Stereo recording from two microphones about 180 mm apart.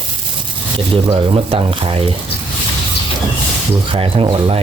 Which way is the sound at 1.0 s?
25° right (ahead or behind).